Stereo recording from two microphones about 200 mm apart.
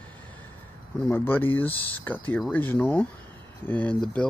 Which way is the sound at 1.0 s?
10° left (ahead or behind).